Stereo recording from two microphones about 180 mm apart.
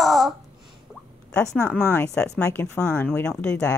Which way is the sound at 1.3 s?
5° left (ahead or behind).